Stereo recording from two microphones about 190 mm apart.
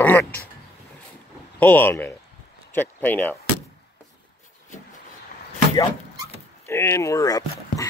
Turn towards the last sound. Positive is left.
turn(degrees=20)  # may be behind; listen again after turning